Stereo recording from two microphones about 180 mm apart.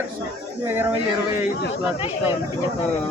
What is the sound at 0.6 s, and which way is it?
Speech, 10° right (ahead or behind).